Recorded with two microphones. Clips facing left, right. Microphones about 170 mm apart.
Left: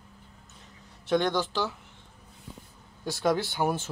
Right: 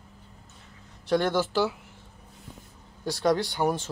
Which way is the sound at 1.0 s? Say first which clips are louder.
Right 1 dB; 5° right (ahead or behind).